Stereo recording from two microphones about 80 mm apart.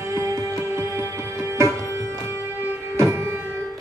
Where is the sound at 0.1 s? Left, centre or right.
Right.